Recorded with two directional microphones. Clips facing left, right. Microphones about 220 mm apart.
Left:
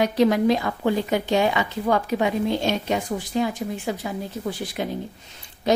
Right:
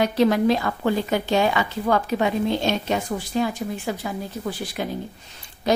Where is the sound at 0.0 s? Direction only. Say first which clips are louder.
Even; 15° left (ahead or behind).